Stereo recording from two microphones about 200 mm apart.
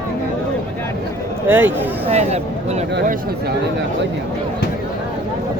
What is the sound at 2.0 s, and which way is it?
Speech, 35° right (ahead or behind).